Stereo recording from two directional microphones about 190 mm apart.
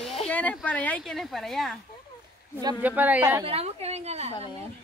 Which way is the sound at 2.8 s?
10° right (ahead or behind).